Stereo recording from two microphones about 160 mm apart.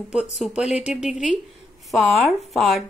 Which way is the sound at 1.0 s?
5° right (ahead or behind).